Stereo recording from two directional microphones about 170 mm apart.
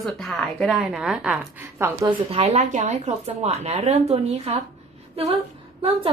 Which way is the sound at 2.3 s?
40° right (ahead or behind).